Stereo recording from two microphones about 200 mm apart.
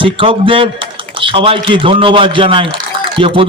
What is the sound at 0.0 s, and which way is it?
A man's voice, 25° right (ahead or behind).